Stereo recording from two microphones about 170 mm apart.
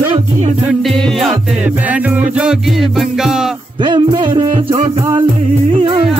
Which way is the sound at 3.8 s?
25° right (ahead or behind).